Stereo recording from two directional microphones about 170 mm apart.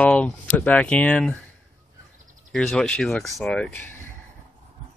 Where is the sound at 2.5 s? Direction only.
Centre (ahead or behind).